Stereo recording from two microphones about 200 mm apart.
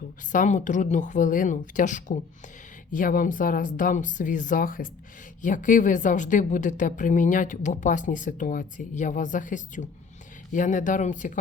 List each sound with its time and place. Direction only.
0.3 s a woman's voice: 40° left (ahead or behind)